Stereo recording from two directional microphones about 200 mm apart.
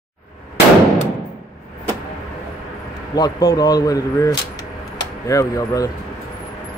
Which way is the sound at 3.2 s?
20° left (ahead or behind).